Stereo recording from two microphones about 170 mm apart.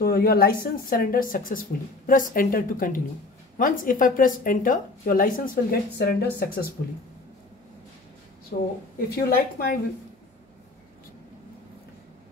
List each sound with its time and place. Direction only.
0.0 s a woman's voice: 60° left (ahead or behind)
9.1 s a woman's voice: 65° left (ahead or behind)